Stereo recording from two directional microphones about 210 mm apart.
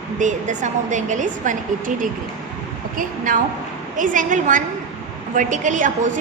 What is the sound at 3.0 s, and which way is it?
A woman's voice, 40° right (ahead or behind).